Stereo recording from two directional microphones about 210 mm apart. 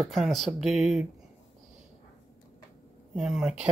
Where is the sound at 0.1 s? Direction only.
Centre (ahead or behind).